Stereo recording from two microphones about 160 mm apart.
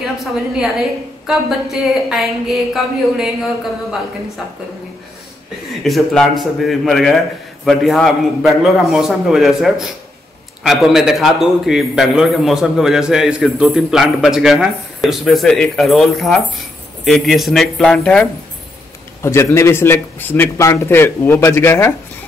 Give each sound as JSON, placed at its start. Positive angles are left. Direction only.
{"t": 1.2, "sound": "a man's voice", "side_deg": 0}
{"t": 5.9, "sound": "a man's voice", "side_deg": 0}
{"t": 19.2, "sound": "a man's voice", "side_deg": 15}